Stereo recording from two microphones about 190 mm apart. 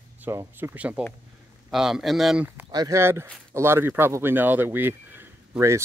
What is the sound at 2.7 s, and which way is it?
Speech, 20° right (ahead or behind).